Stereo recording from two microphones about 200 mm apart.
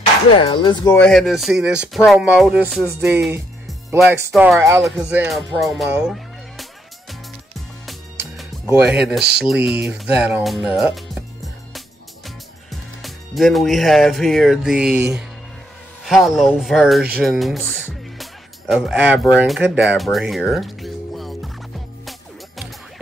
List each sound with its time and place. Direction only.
0.4 s speech: 25° left (ahead or behind)
0.9 s speech: 5° left (ahead or behind)
4.6 s speech: 15° right (ahead or behind)
5.9 s music: 5° right (ahead or behind)
8.6 s speech: 10° right (ahead or behind)
13.0 s speech: centre (ahead or behind)
18.1 s music: centre (ahead or behind)
19.3 s speech: 5° right (ahead or behind)